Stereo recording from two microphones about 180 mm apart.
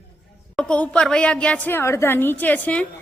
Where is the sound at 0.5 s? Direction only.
5° left (ahead or behind).